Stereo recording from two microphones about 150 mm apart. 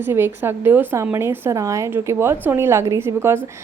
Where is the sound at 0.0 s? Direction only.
15° right (ahead or behind).